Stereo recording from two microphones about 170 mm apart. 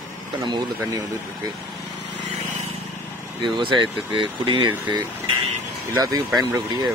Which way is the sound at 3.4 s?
30° right (ahead or behind).